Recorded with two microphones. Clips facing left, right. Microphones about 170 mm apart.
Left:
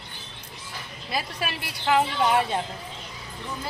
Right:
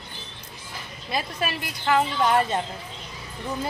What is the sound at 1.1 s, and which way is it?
A woman's voice, 5° left (ahead or behind).